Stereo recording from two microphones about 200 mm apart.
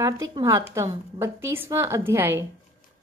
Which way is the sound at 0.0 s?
20° right (ahead or behind).